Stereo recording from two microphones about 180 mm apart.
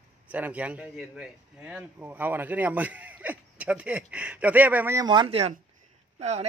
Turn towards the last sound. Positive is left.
turn(degrees=-35)  # may be behind; listen again after turning